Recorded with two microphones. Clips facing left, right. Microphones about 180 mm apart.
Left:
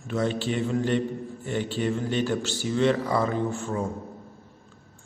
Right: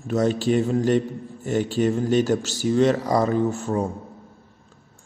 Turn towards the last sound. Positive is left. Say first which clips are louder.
# right 5 dB
turn(degrees=-40)  # may be behind; listen again after turning